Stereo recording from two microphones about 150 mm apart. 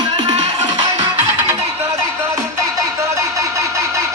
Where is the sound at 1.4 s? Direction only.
15° right (ahead or behind).